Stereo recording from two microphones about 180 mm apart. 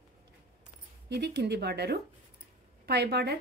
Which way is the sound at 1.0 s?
70° right (ahead or behind).